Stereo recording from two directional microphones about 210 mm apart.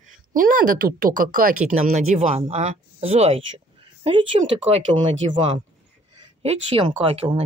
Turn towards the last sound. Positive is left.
turn(degrees=-30)  # may be behind; listen again after turning